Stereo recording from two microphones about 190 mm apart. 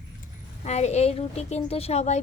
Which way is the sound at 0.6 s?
35° left (ahead or behind).